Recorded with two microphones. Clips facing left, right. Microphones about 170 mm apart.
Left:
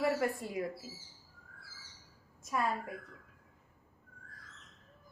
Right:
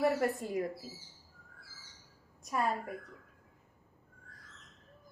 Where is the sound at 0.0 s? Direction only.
45° right (ahead or behind).